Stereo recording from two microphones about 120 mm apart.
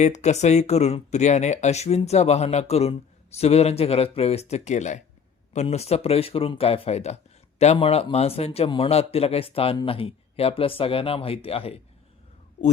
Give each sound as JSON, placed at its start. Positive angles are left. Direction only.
{"t": 0.0, "sound": "speech", "side_deg": 75}
{"t": 5.6, "sound": "speech", "side_deg": 60}